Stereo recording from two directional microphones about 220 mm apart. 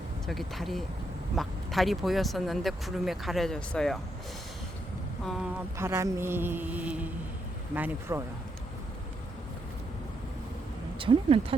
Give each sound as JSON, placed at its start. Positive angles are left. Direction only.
{"t": 0.3, "sound": "speech", "side_deg": 0}
{"t": 5.2, "sound": "speech", "side_deg": 0}
{"t": 5.7, "sound": "speech", "side_deg": -10}
{"t": 8.1, "sound": "speech", "side_deg": -10}
{"t": 11.0, "sound": "speech", "side_deg": -25}